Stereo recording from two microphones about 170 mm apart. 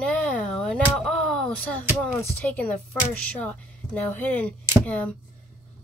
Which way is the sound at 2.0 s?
10° left (ahead or behind).